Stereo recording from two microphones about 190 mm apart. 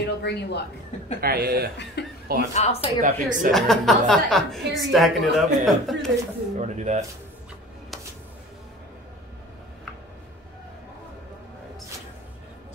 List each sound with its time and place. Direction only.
0.0 s speech: 60° left (ahead or behind)
1.2 s a woman's voice: 50° right (ahead or behind)
2.0 s chuckle: 60° left (ahead or behind)
2.5 s speech: 35° left (ahead or behind)
3.0 s a woman's voice: 45° right (ahead or behind)
3.5 s speech: centre (ahead or behind)
6.6 s speech: 40° right (ahead or behind)